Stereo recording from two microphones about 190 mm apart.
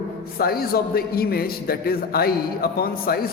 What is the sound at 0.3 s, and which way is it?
A man's voice, 50° left (ahead or behind).